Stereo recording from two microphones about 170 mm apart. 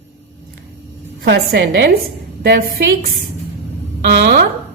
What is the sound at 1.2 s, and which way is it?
Speech, 80° right.